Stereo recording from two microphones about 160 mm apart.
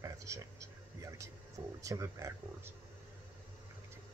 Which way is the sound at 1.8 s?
20° right (ahead or behind).